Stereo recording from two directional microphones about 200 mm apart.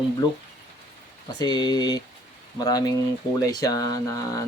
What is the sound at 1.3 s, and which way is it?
Speech, 20° left (ahead or behind).